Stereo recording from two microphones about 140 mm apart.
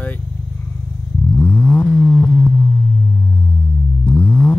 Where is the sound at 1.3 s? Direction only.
15° left (ahead or behind).